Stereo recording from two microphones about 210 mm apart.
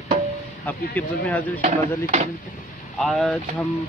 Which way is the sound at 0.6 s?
5° left (ahead or behind).